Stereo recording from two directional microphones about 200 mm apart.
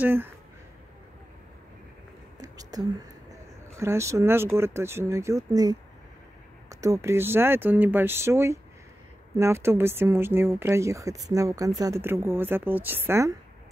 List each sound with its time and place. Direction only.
0.0 s speech: 10° right (ahead or behind)
2.4 s whispering: 20° right (ahead or behind)
3.8 s speech: 15° right (ahead or behind)